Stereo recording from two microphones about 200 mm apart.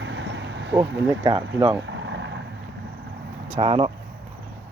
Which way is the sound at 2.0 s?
65° right (ahead or behind).